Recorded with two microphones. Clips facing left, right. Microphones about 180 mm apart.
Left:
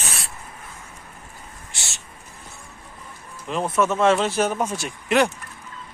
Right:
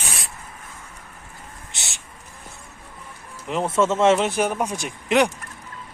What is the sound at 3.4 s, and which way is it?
Speech, 20° right (ahead or behind).